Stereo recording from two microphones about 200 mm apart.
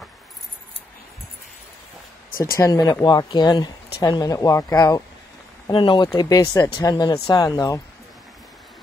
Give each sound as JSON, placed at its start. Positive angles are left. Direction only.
{"t": 2.5, "sound": "speech", "side_deg": 20}